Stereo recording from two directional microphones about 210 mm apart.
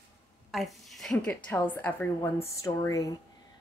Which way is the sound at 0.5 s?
Centre (ahead or behind).